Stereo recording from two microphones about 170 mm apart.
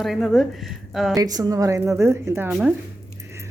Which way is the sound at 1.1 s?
20° right (ahead or behind).